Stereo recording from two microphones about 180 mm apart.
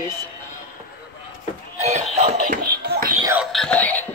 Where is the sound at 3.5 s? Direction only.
5° left (ahead or behind).